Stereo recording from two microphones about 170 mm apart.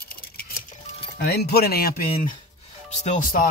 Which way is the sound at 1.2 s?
70° left (ahead or behind).